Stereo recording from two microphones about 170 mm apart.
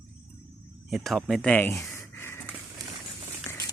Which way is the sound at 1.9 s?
15° left (ahead or behind).